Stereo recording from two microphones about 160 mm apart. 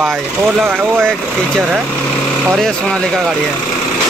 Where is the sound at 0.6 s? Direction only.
10° right (ahead or behind).